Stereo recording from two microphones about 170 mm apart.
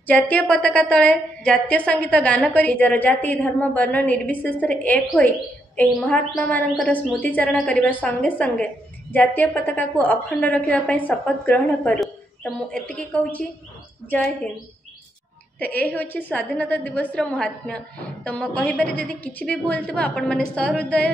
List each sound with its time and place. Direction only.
0.0 s a woman's voice: 10° left (ahead or behind)
15.6 s a woman's voice: 10° left (ahead or behind)